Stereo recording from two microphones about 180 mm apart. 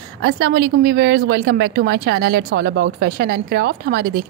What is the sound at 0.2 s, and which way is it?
A woman's voice, 65° right (ahead or behind).